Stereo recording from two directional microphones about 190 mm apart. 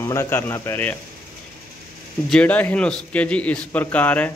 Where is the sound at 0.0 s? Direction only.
15° left (ahead or behind).